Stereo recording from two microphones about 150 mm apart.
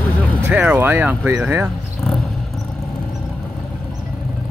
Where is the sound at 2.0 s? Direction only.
Centre (ahead or behind).